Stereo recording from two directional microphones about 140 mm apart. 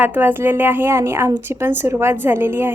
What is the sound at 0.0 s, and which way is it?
A woman's voice, 15° right (ahead or behind).